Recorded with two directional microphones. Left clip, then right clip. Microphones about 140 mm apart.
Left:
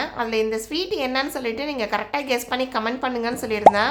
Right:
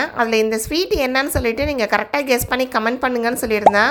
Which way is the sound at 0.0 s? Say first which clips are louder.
Right 6 dB; 45° right (ahead or behind).